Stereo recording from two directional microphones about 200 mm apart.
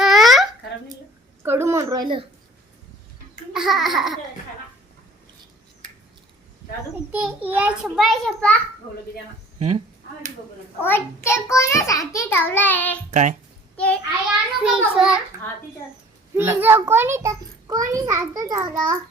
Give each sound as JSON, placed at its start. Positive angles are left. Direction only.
{"t": 0.0, "sound": "a sound", "side_deg": 0}
{"t": 1.5, "sound": "a child's voice", "side_deg": -10}
{"t": 3.5, "sound": "a child's voice", "side_deg": 0}
{"t": 7.1, "sound": "a child's voice", "side_deg": -10}
{"t": 10.8, "sound": "a child's voice", "side_deg": 10}
{"t": 13.1, "sound": "speech", "side_deg": -35}
{"t": 13.7, "sound": "a child's voice", "side_deg": 5}
{"t": 16.3, "sound": "a child's voice", "side_deg": -10}